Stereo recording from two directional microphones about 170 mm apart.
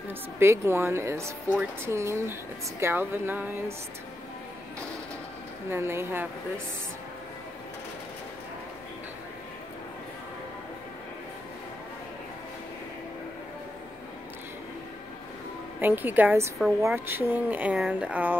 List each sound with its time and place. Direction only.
0.4 s speech: 15° right (ahead or behind)
5.7 s speech: 15° right (ahead or behind)
15.8 s speech: 10° right (ahead or behind)